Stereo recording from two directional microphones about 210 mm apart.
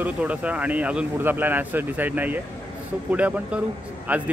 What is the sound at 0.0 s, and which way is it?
Speech, 5° right (ahead or behind).